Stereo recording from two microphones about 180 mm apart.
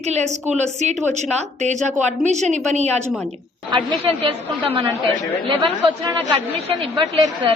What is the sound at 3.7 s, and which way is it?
A woman's voice, 25° right (ahead or behind).